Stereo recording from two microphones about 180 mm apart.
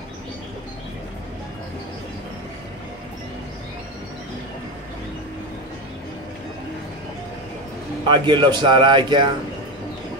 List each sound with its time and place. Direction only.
8.1 s a man's voice: 25° right (ahead or behind)